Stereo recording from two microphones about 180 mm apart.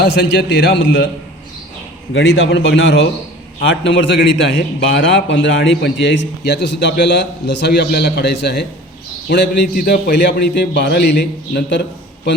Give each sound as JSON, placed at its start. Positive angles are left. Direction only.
{"t": 0.0, "sound": "a man's voice", "side_deg": 80}
{"t": 2.1, "sound": "a man's voice", "side_deg": 90}